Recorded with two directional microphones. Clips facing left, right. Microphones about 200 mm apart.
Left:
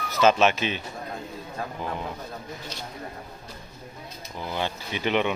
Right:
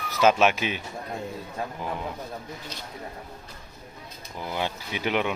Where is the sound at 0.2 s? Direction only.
10° right (ahead or behind).